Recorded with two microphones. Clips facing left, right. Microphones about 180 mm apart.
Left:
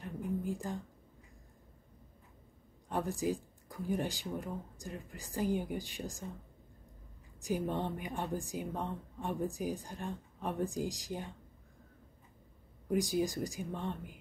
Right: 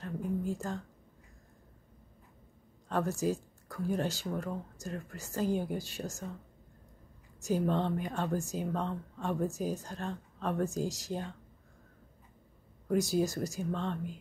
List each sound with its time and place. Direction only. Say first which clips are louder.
0.0 s a sound: right 3 dB; 15° left (ahead or behind)
2.9 s speech: right 3 dB; 15° left (ahead or behind)
7.3 s a woman's voice: right 4 dB; 15° left (ahead or behind)
12.9 s speech: right 3 dB; 15° left (ahead or behind)